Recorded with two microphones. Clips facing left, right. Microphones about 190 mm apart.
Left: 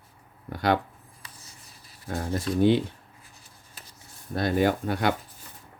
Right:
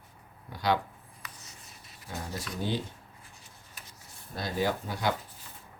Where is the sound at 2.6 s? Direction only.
65° left (ahead or behind).